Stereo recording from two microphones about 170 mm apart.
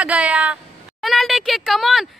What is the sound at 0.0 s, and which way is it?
Speech, 10° right (ahead or behind).